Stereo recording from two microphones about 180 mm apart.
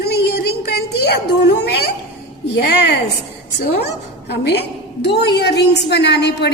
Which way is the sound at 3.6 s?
65° left (ahead or behind).